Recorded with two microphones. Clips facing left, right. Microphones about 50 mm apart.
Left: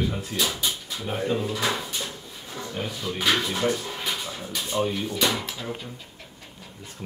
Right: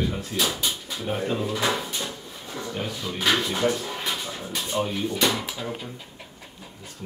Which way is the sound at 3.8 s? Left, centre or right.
Centre.